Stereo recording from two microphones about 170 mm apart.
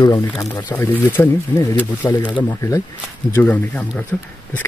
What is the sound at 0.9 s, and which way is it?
Speech, 10° left (ahead or behind).